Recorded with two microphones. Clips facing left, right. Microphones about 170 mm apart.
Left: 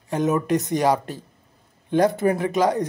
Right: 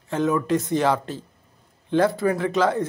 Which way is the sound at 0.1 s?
20° left (ahead or behind).